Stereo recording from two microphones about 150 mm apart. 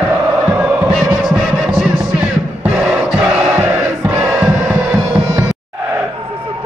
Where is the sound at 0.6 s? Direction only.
5° right (ahead or behind).